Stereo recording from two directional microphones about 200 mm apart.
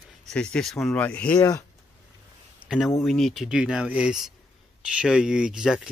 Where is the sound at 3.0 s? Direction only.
Centre (ahead or behind).